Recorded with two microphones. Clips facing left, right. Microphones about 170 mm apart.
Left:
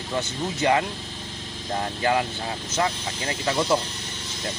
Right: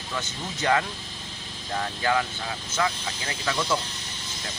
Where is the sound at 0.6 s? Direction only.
20° left (ahead or behind).